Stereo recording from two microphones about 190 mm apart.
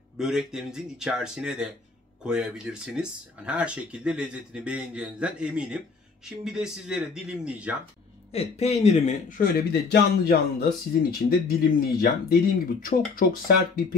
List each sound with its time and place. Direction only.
0.2 s speech: centre (ahead or behind)
8.3 s speech: 35° left (ahead or behind)
9.4 s speech: 60° left (ahead or behind)